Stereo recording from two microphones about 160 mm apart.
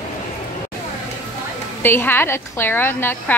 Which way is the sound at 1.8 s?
15° left (ahead or behind).